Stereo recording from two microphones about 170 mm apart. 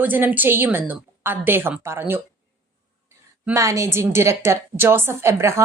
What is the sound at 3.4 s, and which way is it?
Speech, 15° right (ahead or behind).